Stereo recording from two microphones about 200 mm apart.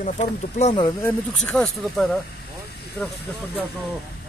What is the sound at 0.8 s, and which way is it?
Speech, 10° left (ahead or behind).